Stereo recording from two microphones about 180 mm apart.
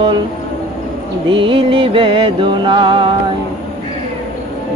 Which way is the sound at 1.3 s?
30° right (ahead or behind).